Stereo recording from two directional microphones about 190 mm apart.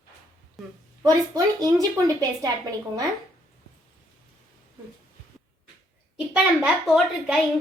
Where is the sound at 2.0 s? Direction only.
15° right (ahead or behind).